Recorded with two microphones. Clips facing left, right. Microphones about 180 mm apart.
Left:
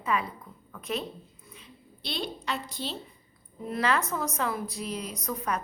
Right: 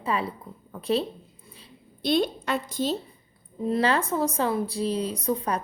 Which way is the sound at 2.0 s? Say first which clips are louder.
Right 10 dB; 50° right (ahead or behind).